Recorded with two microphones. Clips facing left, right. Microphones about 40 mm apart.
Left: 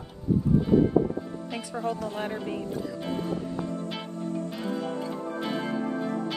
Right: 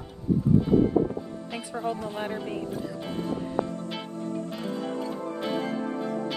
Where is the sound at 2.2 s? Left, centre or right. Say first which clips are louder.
Even; centre.